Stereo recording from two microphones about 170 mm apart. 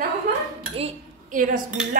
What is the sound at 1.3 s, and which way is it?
Speech, 50° right (ahead or behind).